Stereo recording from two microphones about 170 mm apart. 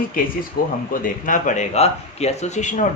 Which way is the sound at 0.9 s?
50° left (ahead or behind).